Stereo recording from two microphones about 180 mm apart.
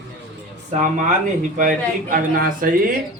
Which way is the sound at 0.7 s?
45° right (ahead or behind).